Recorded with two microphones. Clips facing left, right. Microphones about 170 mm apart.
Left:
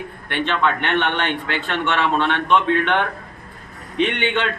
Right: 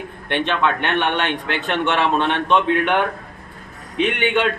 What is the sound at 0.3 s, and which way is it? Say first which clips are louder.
Speech: right 1 dB; 20° right (ahead or behind).